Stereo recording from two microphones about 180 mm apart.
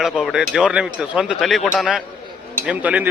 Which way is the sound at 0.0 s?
Centre (ahead or behind).